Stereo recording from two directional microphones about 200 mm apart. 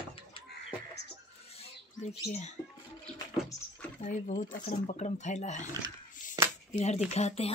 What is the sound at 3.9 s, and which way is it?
Speech, 40° left (ahead or behind).